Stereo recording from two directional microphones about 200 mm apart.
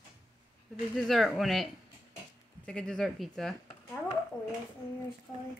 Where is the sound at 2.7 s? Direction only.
5° left (ahead or behind).